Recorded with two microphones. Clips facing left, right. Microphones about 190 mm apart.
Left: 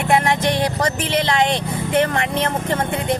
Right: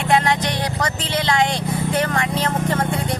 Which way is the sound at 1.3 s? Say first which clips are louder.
Left 1 dB; 25° left (ahead or behind).